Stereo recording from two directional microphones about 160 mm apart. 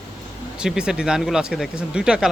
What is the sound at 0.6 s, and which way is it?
Speech, 5° right (ahead or behind).